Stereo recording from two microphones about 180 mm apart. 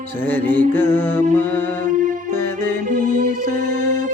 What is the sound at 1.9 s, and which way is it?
Music, 45° right (ahead or behind).